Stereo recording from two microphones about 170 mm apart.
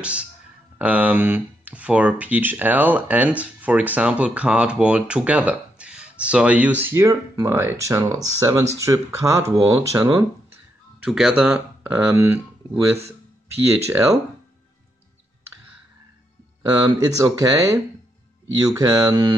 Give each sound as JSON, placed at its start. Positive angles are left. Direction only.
{"t": 0.0, "sound": "speech", "side_deg": -5}
{"t": 11.1, "sound": "speech", "side_deg": 0}
{"t": 16.6, "sound": "speech", "side_deg": -25}